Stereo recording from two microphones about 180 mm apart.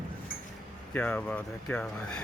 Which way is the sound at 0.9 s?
5° left (ahead or behind).